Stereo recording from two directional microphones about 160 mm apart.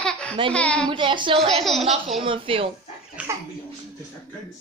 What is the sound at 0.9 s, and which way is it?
Speech, 30° right (ahead or behind).